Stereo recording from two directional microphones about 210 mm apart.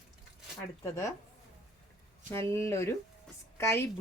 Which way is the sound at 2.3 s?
15° left (ahead or behind).